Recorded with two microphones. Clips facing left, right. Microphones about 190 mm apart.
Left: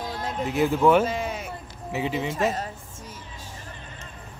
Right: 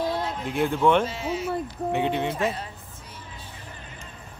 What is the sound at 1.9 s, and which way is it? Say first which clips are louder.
Speech: right 2 dB; centre (ahead or behind).